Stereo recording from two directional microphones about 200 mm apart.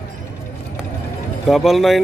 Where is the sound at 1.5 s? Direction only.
Centre (ahead or behind).